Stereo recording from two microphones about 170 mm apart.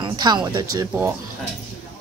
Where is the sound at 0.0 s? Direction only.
25° right (ahead or behind).